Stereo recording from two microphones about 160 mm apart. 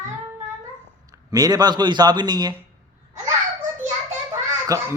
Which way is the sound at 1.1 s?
25° right (ahead or behind).